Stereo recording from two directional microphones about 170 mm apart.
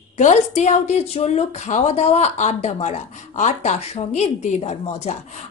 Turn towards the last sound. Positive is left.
turn(degrees=40)  # may be behind; listen again after turning